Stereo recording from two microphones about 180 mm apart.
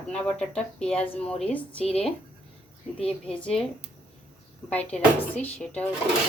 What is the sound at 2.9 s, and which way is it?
Speech, 5° left (ahead or behind).